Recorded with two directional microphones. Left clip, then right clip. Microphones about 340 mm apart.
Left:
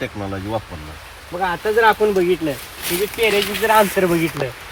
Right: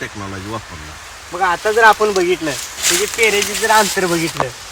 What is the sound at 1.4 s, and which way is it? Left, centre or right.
Speech, centre.